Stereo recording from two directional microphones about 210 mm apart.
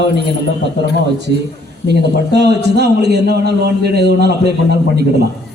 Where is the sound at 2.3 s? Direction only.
55° right (ahead or behind).